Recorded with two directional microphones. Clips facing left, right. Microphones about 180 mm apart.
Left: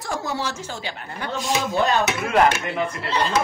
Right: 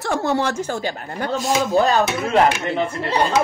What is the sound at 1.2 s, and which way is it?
A woman's voice, 40° right (ahead or behind).